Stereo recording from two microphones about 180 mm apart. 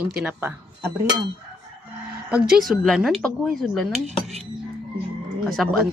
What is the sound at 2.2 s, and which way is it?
Speech, 5° right (ahead or behind).